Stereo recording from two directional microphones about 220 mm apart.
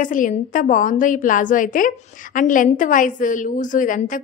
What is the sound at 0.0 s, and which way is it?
A woman's voice, 35° left (ahead or behind).